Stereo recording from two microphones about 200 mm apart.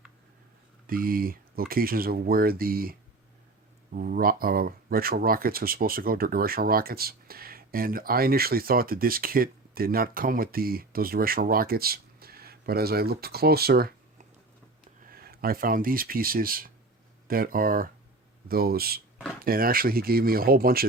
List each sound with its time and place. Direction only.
0.9 s speech: 45° right (ahead or behind)
3.9 s speech: 45° right (ahead or behind)